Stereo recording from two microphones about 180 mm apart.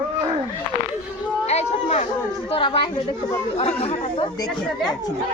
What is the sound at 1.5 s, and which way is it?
Speech, 40° left (ahead or behind).